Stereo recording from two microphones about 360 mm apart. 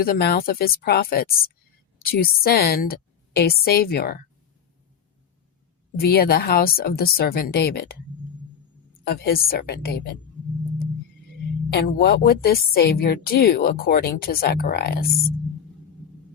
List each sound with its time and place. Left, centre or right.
0.0 s a woman's voice: left
6.0 s a woman's voice: left
9.0 s a woman's voice: left
11.7 s a woman's voice: left